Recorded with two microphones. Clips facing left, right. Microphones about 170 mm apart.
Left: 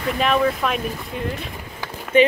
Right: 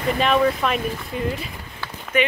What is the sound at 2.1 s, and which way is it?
Speech, 30° left (ahead or behind).